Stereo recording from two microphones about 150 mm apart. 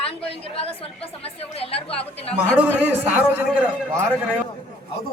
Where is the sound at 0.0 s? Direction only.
40° left (ahead or behind).